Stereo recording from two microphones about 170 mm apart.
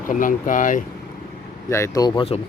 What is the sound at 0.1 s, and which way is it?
Speech, 50° left (ahead or behind).